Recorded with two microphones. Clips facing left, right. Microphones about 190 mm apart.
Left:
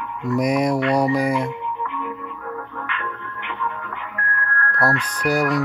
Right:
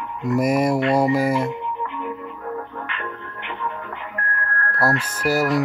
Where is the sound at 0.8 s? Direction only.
25° right (ahead or behind).